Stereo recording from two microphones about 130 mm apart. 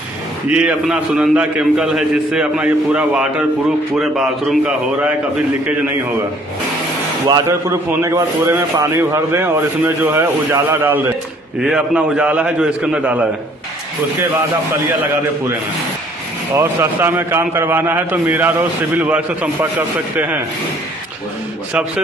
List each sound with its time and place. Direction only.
0.5 s a man's voice: 5° right (ahead or behind)
7.2 s a man's voice: 30° right (ahead or behind)
7.9 s speech: 20° right (ahead or behind)
11.6 s a man's voice: 5° right (ahead or behind)
16.5 s a man's voice: 15° right (ahead or behind)